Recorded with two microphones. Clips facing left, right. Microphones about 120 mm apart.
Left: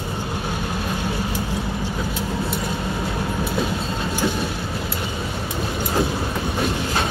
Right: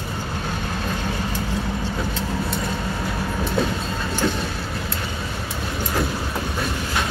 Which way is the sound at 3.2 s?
10° left (ahead or behind).